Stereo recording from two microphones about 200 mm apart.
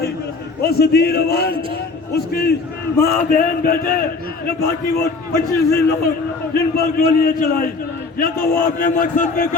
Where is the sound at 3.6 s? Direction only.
45° left (ahead or behind).